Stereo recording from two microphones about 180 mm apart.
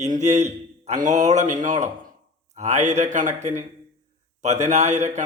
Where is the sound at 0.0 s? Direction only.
40° right (ahead or behind).